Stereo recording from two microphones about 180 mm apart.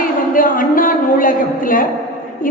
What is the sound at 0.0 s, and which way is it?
A woman's voice, 50° left (ahead or behind).